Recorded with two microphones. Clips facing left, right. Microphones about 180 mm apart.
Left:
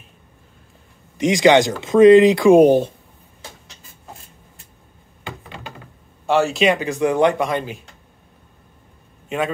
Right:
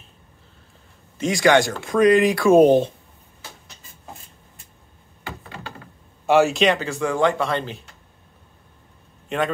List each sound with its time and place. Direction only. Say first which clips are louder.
1.1 s speech: left 4 dB; 20° left (ahead or behind)
6.2 s speech: even; centre (ahead or behind)
9.3 s a man's voice: left 1 dB; 5° left (ahead or behind)